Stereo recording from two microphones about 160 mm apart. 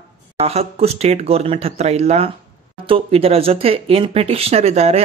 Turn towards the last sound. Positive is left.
turn(degrees=-40)  # may be behind; listen again after turning